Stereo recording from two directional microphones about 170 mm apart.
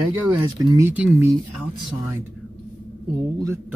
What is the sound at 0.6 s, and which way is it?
Speech, 20° right (ahead or behind).